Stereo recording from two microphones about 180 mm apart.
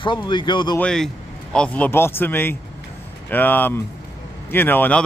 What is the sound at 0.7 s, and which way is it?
Speech, 5° left (ahead or behind).